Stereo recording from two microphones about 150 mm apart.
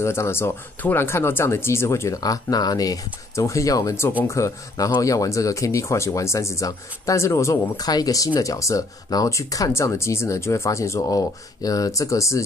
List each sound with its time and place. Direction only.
0.0 s speech: 15° left (ahead or behind)